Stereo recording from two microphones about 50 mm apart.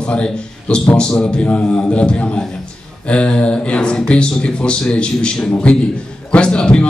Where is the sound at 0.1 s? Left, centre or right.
Centre.